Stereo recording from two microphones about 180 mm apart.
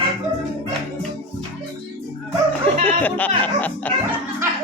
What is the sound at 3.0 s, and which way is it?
Speech, 10° left (ahead or behind).